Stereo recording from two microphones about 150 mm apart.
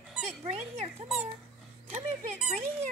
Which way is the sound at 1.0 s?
5° right (ahead or behind).